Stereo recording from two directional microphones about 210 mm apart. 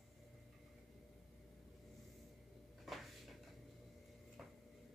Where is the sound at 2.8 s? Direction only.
Centre (ahead or behind).